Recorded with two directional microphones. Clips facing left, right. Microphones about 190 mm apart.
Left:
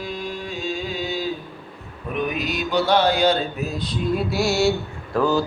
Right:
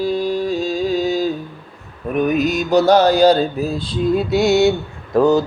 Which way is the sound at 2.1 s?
45° right (ahead or behind).